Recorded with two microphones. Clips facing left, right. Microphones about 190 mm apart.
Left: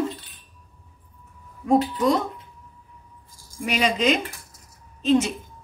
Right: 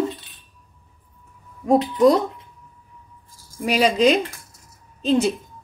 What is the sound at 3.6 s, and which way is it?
Speech, 35° right (ahead or behind).